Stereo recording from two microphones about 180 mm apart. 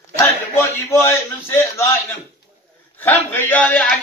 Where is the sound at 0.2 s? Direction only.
15° left (ahead or behind).